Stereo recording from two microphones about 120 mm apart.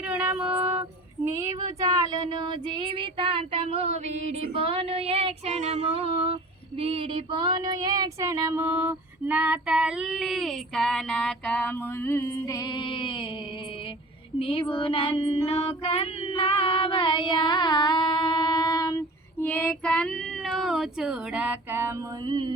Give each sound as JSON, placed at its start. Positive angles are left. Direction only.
{"t": 0.0, "sound": "female singing", "side_deg": -15}
{"t": 1.4, "sound": "female singing", "side_deg": -30}
{"t": 6.7, "sound": "female singing", "side_deg": -55}
{"t": 12.4, "sound": "music", "side_deg": 35}
{"t": 14.3, "sound": "child singing", "side_deg": 50}
{"t": 15.4, "sound": "female singing", "side_deg": 55}
{"t": 19.4, "sound": "speech", "side_deg": 10}
{"t": 22.3, "sound": "a sound", "side_deg": -40}